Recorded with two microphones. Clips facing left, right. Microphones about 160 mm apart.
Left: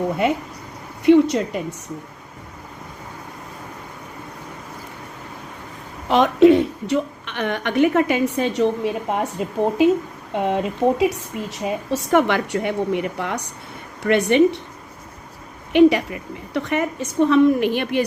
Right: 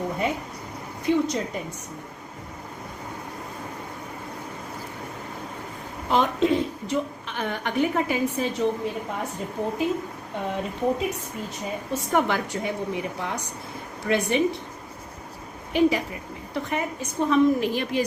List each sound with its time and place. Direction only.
0.2 s a woman's voice: 80° left
6.1 s a woman's voice: 75° left (ahead or behind)
15.7 s a woman's voice: 70° left (ahead or behind)